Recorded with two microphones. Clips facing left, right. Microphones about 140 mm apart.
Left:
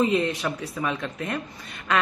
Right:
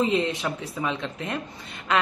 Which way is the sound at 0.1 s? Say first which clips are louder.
Left 1 dB; 20° right (ahead or behind).